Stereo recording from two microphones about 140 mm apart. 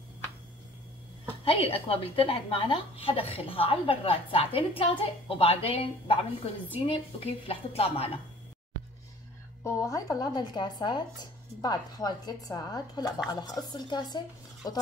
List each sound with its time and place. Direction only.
1.4 s a woman's voice: 45° left (ahead or behind)
9.6 s speech: 20° left (ahead or behind)